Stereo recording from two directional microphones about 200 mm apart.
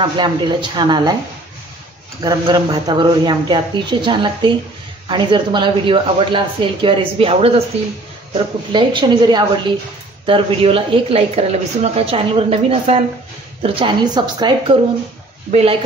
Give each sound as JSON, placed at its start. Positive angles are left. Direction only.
{"t": 0.0, "sound": "speech", "side_deg": -20}
{"t": 2.2, "sound": "speech", "side_deg": -20}
{"t": 8.7, "sound": "speech", "side_deg": -25}